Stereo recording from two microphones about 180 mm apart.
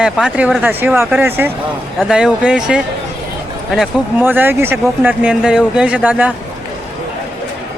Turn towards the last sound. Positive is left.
turn(degrees=-5)  # may be behind; listen again after turning